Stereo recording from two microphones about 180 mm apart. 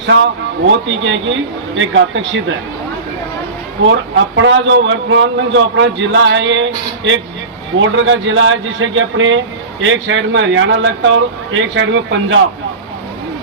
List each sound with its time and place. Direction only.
0.0 s a man's voice: 90° right
3.8 s a man's voice: 90° right